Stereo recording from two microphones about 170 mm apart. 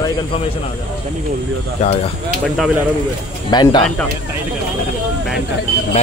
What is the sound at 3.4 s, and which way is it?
Speech, 25° left (ahead or behind).